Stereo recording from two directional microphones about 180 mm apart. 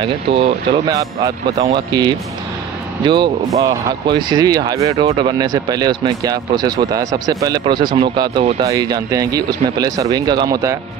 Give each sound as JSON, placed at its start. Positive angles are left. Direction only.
{"t": 0.0, "sound": "speech", "side_deg": -30}
{"t": 0.8, "sound": "speech", "side_deg": -20}
{"t": 3.5, "sound": "speech", "side_deg": -20}
{"t": 4.9, "sound": "speech", "side_deg": -30}